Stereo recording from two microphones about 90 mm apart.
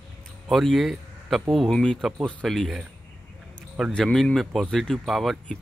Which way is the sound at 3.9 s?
5° left (ahead or behind).